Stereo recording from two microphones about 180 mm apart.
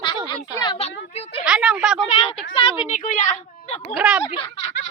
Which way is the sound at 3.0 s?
45° left (ahead or behind).